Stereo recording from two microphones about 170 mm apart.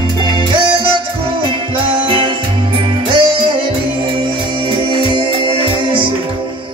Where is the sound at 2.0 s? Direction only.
30° right (ahead or behind).